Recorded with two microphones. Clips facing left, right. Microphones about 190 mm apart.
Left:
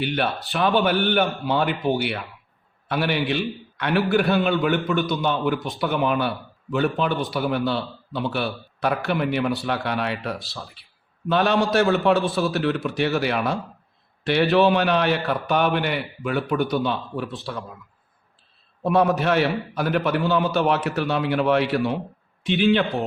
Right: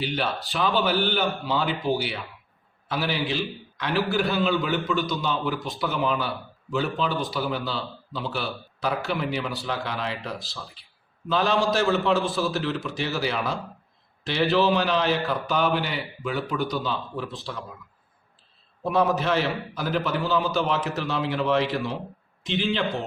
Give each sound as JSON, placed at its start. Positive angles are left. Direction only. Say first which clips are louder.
{"t": 0.0, "sound": "a man's voice", "louder": "left 3 dB", "side_deg": 60}
{"t": 18.8, "sound": "a man's voice", "louder": "left 3 dB", "side_deg": 60}